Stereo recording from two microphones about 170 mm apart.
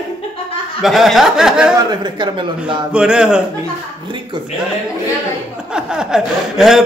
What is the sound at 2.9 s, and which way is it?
Speech, 5° right (ahead or behind).